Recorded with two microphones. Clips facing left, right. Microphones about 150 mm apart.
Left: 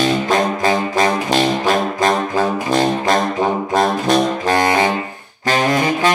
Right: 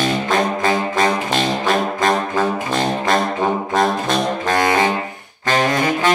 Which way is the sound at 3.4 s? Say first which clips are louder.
Left 1 dB; 35° left (ahead or behind).